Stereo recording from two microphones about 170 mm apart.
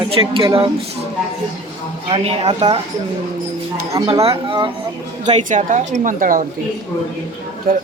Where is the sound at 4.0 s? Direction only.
25° right (ahead or behind).